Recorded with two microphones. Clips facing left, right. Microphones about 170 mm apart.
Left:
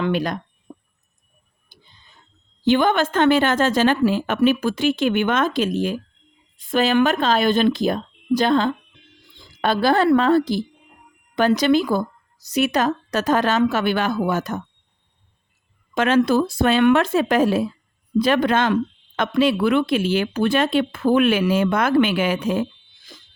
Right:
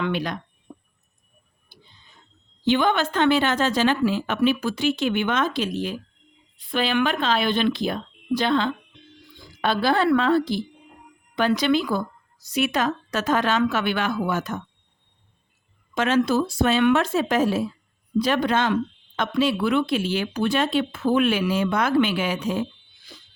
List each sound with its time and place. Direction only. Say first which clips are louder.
0.0 s speech: left 4 dB; 45° left (ahead or behind)
0.7 s a sound: left 2 dB; 30° left (ahead or behind)
2.6 s a woman's voice: left 3 dB; 50° left (ahead or behind)
16.0 s speech: left 3 dB; 55° left (ahead or behind)